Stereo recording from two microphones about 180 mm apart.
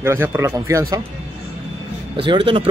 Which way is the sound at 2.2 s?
25° right (ahead or behind).